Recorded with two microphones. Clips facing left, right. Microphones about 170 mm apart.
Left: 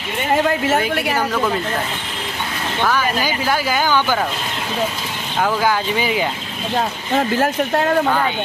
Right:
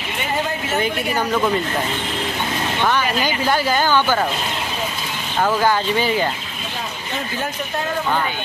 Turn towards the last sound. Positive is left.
turn(degrees=75)  # may be behind; listen again after turning